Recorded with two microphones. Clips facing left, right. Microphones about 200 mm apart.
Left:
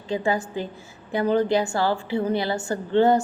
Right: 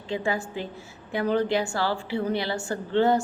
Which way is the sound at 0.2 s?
Centre (ahead or behind).